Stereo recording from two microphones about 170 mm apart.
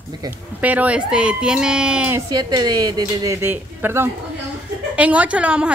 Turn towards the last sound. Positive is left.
turn(degrees=-5)  # may be behind; listen again after turning